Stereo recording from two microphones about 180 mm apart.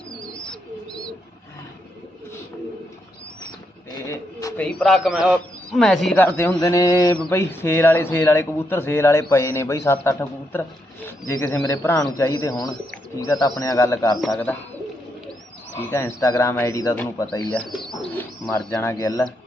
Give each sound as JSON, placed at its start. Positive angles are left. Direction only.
{"t": 0.1, "sound": "bird", "side_deg": 5}
{"t": 3.9, "sound": "a sound", "side_deg": 20}
{"t": 4.6, "sound": "a man's voice", "side_deg": 5}
{"t": 14.2, "sound": "speech", "side_deg": 5}
{"t": 15.8, "sound": "a man's voice", "side_deg": 15}
{"t": 17.7, "sound": "speech", "side_deg": 0}